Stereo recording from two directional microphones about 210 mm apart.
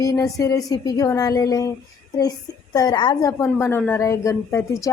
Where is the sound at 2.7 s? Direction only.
20° left (ahead or behind).